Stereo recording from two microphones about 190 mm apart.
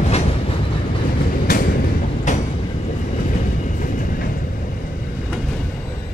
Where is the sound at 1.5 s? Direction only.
50° left (ahead or behind).